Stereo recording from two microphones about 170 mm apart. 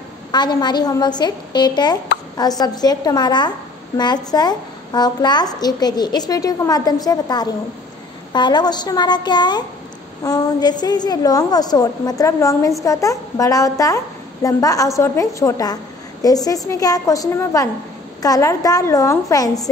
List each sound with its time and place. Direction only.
0.3 s a woman's voice: 25° left (ahead or behind)